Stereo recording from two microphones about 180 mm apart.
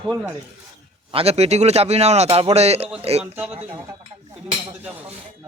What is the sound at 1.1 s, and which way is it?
A man's voice, 35° right (ahead or behind).